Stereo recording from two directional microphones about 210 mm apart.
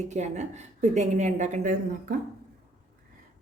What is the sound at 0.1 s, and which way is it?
Speech, 35° right (ahead or behind).